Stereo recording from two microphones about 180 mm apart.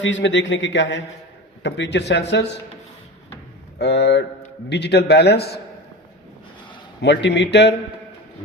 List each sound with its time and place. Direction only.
0.0 s a man's voice: 85° left
3.8 s a man's voice: 70° left (ahead or behind)
7.0 s a man's voice: 75° left (ahead or behind)